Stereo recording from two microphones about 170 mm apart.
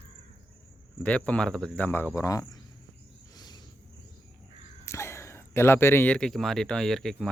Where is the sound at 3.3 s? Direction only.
25° left (ahead or behind).